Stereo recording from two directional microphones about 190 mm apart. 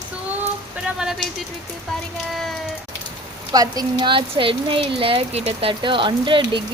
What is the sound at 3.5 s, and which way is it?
Speech, 20° right (ahead or behind).